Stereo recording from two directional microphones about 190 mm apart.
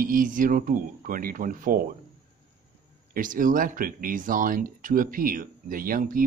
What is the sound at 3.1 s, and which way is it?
Speech, 45° right (ahead or behind).